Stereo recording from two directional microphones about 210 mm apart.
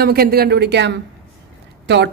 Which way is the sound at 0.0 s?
45° right (ahead or behind).